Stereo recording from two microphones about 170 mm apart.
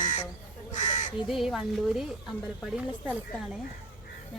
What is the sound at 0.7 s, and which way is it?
Crow, 45° left (ahead or behind).